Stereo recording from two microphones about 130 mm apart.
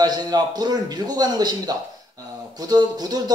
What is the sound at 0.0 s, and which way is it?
Speech, 30° right (ahead or behind).